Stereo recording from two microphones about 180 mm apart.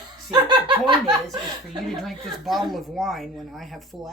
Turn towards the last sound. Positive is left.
turn(degrees=0)  # may be behind; listen again after turning